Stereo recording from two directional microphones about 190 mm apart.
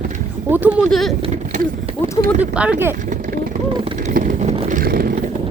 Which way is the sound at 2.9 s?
45° right (ahead or behind).